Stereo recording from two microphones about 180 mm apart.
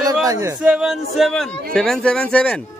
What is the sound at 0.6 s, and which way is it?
Speech, 5° right (ahead or behind).